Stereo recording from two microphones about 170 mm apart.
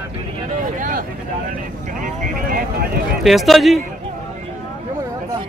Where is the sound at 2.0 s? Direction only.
60° right (ahead or behind).